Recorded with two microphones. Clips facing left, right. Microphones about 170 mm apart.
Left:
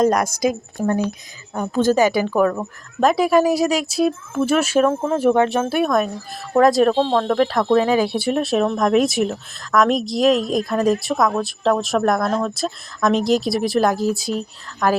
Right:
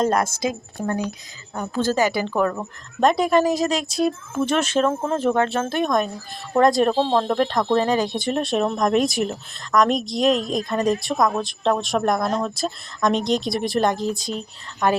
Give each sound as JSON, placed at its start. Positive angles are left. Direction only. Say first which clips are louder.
{"t": 0.0, "sound": "a woman's voice", "louder": "left 4 dB", "side_deg": -25}
{"t": 0.8, "sound": "a woman's voice", "louder": "left 5 dB", "side_deg": 15}